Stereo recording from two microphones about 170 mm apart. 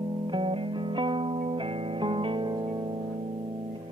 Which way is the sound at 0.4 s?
30° right (ahead or behind).